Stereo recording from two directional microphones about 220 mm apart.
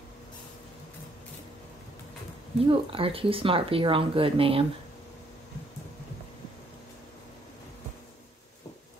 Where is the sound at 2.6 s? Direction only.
25° right (ahead or behind).